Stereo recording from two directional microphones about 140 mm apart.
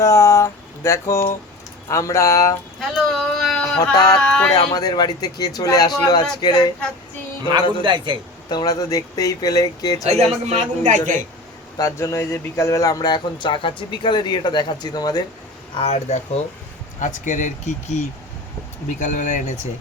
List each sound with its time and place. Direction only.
0.0 s a sound: 20° left (ahead or behind)
1.9 s a man's voice: 20° left (ahead or behind)
2.9 s a sound: centre (ahead or behind)
3.8 s a man's voice: 25° left (ahead or behind)
4.1 s speech: 5° left (ahead or behind)
4.5 s a man's voice: 25° left (ahead or behind)
7.8 s a man's voice: 35° right (ahead or behind)
8.4 s a man's voice: 30° left (ahead or behind)
10.1 s a man's voice: 50° right (ahead or behind)
11.8 s speech: 20° left (ahead or behind)
15.8 s speech: 50° left (ahead or behind)
17.0 s speech: 60° left (ahead or behind)